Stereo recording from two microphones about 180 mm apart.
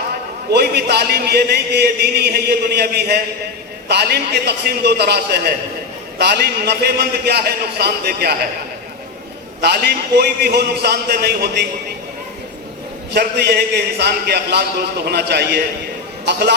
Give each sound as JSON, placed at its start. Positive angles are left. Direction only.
{"t": 0.5, "sound": "a man's voice", "side_deg": -65}
{"t": 9.6, "sound": "a man's voice", "side_deg": -65}
{"t": 13.1, "sound": "a man's voice", "side_deg": -65}